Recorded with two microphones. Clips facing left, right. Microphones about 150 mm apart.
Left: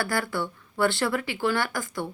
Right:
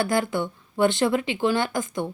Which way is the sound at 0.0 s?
20° right (ahead or behind).